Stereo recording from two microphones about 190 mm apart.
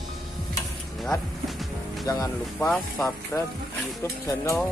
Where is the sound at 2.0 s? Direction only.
15° left (ahead or behind).